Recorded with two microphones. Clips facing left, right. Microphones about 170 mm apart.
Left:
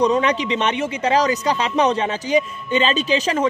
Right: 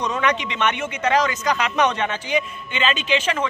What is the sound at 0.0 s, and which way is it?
Speech, 35° left (ahead or behind).